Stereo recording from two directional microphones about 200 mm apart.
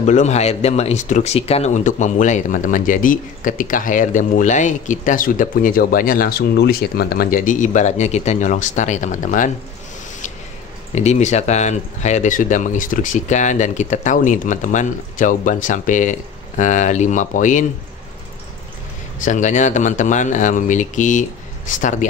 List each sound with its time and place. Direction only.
0.0 s speech: 35° left (ahead or behind)
11.0 s speech: 35° left (ahead or behind)
19.2 s speech: 40° left (ahead or behind)